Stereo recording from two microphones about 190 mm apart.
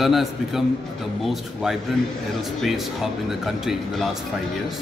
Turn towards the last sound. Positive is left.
turn(degrees=0)  # may be behind; listen again after turning